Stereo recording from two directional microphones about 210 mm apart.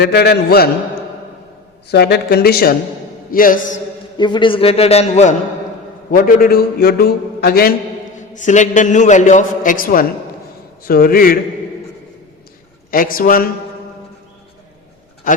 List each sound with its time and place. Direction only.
0.0 s a man's voice: 50° left (ahead or behind)
1.9 s a man's voice: 50° left (ahead or behind)
4.2 s a man's voice: 20° left (ahead or behind)
6.1 s a man's voice: 45° left (ahead or behind)
8.1 s a man's voice: 35° left (ahead or behind)
12.9 s a man's voice: 40° left (ahead or behind)